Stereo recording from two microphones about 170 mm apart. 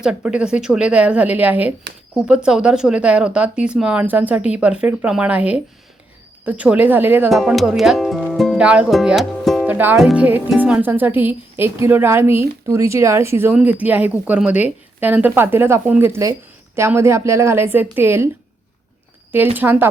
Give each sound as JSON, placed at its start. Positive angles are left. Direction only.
{"t": 0.0, "sound": "speech", "side_deg": -5}
{"t": 7.3, "sound": "speech", "side_deg": 0}
{"t": 9.6, "sound": "speech", "side_deg": -10}
{"t": 19.5, "sound": "speech", "side_deg": -10}